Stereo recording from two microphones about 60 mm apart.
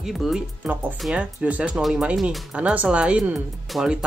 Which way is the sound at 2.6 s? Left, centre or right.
Centre.